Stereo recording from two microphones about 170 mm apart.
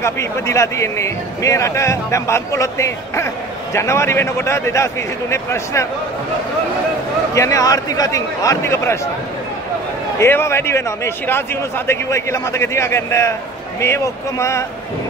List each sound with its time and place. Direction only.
0.0 s speech: 15° left (ahead or behind)
7.3 s a man's voice: 20° left (ahead or behind)
10.1 s speech: 15° left (ahead or behind)
11.9 s speech: 15° left (ahead or behind)